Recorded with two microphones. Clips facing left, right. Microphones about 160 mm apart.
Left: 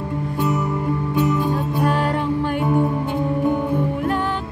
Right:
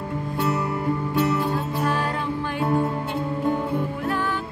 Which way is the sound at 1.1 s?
15° left (ahead or behind).